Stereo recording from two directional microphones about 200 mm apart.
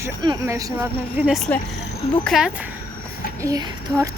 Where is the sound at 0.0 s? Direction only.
15° right (ahead or behind); by 2.6 s centre (ahead or behind).